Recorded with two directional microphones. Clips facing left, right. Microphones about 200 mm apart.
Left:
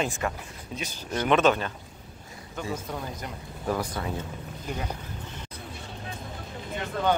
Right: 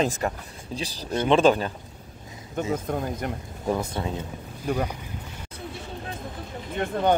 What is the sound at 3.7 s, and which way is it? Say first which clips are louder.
Speech: right 3 dB; 25° right (ahead or behind).